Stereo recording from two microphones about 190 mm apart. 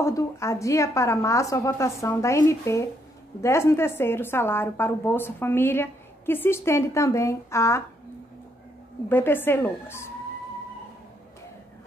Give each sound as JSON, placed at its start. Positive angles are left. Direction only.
{"t": 0.0, "sound": "a woman's voice", "side_deg": 15}
{"t": 9.1, "sound": "a woman's voice", "side_deg": 10}